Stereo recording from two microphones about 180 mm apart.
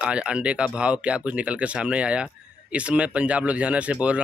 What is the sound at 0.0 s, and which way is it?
Speech, 5° right (ahead or behind).